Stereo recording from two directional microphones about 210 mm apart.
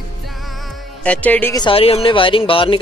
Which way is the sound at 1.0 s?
5° left (ahead or behind).